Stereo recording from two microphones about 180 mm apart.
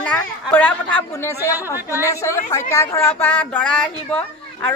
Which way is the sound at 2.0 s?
15° left (ahead or behind).